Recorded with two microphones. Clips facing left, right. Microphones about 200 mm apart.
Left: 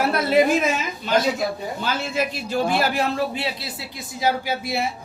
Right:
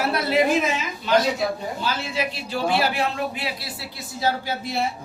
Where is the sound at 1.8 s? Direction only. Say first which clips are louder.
Left 4 dB; 50° left (ahead or behind).